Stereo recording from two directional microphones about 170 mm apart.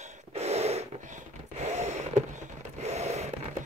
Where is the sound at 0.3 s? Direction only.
40° right (ahead or behind).